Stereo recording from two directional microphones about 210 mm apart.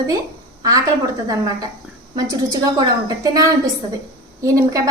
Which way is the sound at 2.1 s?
15° right (ahead or behind).